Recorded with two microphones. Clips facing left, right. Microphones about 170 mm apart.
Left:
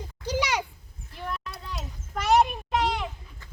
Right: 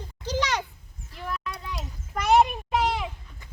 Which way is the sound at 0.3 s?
10° left (ahead or behind).